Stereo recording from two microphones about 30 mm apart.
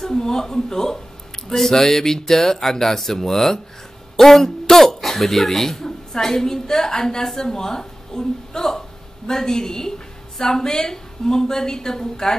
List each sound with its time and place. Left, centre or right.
0.0 s a woman's voice: centre